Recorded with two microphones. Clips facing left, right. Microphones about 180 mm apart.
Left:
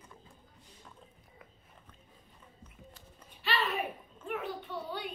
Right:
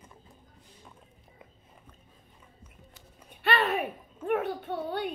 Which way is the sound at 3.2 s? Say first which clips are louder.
Right 6 dB; 60° right (ahead or behind).